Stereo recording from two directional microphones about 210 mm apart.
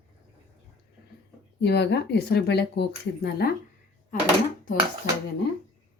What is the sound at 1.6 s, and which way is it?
Speech, 55° left (ahead or behind).